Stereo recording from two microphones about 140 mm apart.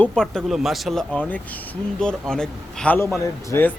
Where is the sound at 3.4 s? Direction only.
15° left (ahead or behind).